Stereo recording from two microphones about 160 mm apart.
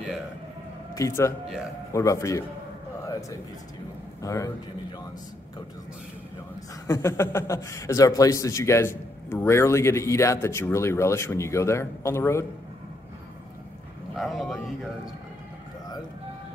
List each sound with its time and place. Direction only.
0.9 s speech: 20° left (ahead or behind)
3.1 s a sound: 20° left (ahead or behind)
4.2 s a man's voice: 20° left (ahead or behind)
6.9 s a man's voice: 15° left (ahead or behind)
14.1 s a man's voice: centre (ahead or behind)